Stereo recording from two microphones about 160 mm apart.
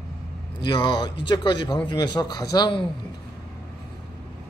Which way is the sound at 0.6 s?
30° left (ahead or behind).